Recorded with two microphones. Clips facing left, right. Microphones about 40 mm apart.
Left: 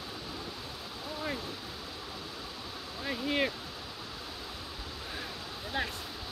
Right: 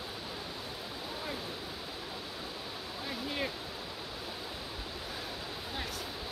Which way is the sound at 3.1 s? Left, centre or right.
Left.